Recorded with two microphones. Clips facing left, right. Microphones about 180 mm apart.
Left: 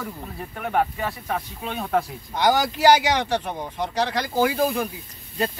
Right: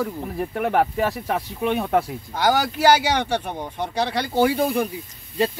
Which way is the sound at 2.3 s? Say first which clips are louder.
Even; 5° right (ahead or behind).